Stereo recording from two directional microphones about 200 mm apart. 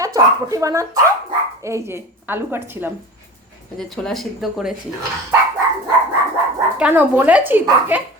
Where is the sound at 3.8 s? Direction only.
Centre (ahead or behind).